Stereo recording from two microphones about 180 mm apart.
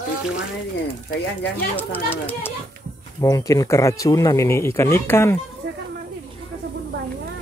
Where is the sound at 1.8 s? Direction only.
10° left (ahead or behind).